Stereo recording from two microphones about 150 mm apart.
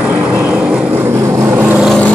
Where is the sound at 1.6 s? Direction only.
10° right (ahead or behind).